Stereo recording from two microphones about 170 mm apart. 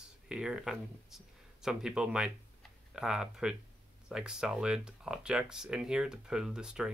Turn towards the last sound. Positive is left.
turn(degrees=-5)  # may be behind; listen again after turning